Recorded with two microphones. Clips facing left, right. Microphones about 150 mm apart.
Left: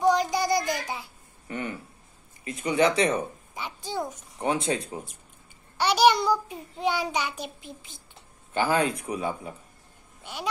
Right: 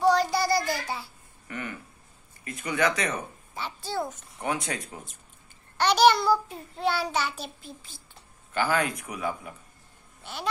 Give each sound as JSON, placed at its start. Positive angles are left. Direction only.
{"t": 0.0, "sound": "child singing", "side_deg": 15}
{"t": 1.5, "sound": "a sound", "side_deg": 25}
{"t": 2.4, "sound": "speech", "side_deg": 30}
{"t": 3.5, "sound": "a sound", "side_deg": 15}
{"t": 4.4, "sound": "speech", "side_deg": 25}
{"t": 5.8, "sound": "child singing", "side_deg": 10}
{"t": 8.5, "sound": "speech", "side_deg": 30}
{"t": 10.2, "sound": "speech", "side_deg": 10}